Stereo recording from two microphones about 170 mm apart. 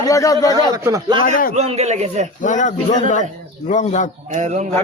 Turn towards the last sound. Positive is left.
turn(degrees=-45)  # may be behind; listen again after turning